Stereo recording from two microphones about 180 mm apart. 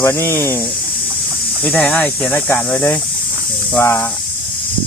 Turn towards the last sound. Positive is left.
turn(degrees=15)  # may be behind; listen again after turning